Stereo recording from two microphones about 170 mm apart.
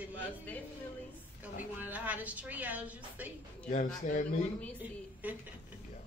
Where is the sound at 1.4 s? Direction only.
10° right (ahead or behind).